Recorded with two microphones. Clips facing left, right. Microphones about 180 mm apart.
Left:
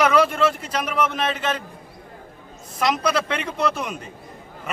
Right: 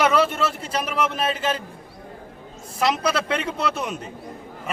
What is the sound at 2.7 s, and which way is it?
A man's voice, 5° right (ahead or behind).